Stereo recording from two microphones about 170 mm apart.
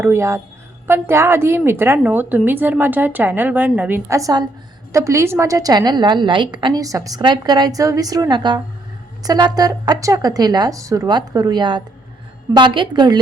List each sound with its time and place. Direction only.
0.0 s a woman's voice: 15° right (ahead or behind)